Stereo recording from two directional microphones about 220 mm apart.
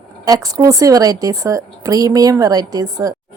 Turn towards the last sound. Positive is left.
turn(degrees=-15)  # may be behind; listen again after turning